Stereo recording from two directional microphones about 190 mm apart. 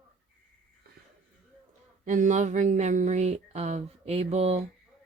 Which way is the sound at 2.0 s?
40° right (ahead or behind).